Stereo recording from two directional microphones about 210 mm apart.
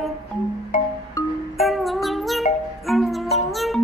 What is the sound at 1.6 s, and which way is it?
Music, centre (ahead or behind).